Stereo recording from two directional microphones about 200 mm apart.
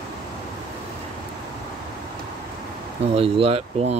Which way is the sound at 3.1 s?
30° right (ahead or behind).